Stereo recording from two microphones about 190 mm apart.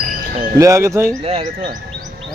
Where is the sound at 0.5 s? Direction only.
15° right (ahead or behind).